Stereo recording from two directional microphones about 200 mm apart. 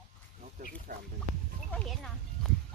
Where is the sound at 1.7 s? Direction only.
5° left (ahead or behind).